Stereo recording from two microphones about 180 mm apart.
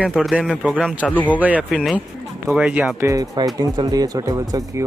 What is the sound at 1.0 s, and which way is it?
Speech, 10° left (ahead or behind).